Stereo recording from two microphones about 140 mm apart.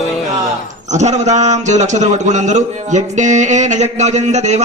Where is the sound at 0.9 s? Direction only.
55° right (ahead or behind).